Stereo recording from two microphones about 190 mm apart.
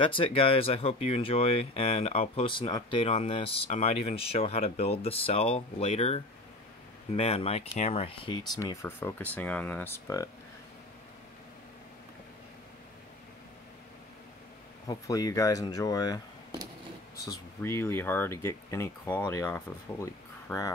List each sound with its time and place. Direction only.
0.0 s speech: 30° left (ahead or behind)
8.5 s speech: 15° left (ahead or behind)
14.9 s speech: 20° left (ahead or behind)
17.2 s speech: 15° left (ahead or behind)